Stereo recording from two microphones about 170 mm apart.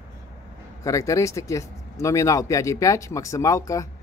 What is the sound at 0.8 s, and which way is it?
Speech, 20° left (ahead or behind).